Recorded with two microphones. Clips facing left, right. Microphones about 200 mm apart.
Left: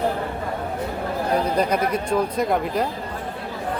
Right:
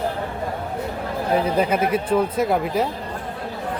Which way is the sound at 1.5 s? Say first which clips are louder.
Right 1 dB; 5° right (ahead or behind).